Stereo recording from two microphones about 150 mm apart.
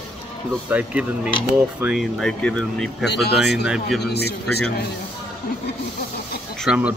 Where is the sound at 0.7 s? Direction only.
5° right (ahead or behind).